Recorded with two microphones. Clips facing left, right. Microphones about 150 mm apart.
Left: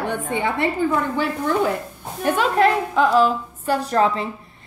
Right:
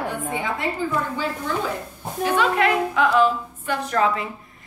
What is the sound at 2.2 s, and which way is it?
A woman's voice, 40° left (ahead or behind).